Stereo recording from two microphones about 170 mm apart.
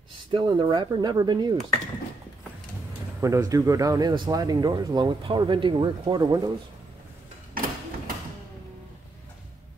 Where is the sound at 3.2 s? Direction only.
20° right (ahead or behind).